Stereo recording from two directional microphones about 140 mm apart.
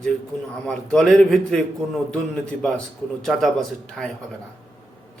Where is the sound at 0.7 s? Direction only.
5° left (ahead or behind).